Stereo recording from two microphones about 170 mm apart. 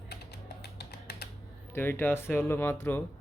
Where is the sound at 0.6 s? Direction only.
75° left (ahead or behind).